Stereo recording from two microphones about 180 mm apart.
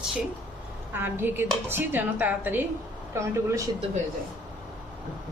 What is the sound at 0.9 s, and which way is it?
A woman's voice, 10° right (ahead or behind).